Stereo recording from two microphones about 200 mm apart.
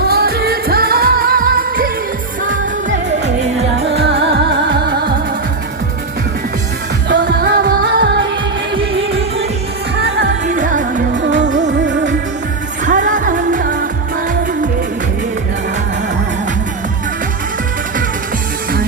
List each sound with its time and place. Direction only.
0.0 s music of asia: 50° right (ahead or behind)
3.8 s music: 60° right (ahead or behind)
7.1 s music of asia: 50° right (ahead or behind)
8.7 s music: 30° right (ahead or behind)
10.4 s music: 40° right (ahead or behind)
12.8 s music of asia: 40° right (ahead or behind)